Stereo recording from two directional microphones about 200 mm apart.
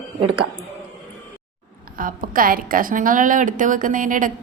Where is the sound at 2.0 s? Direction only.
45° right (ahead or behind).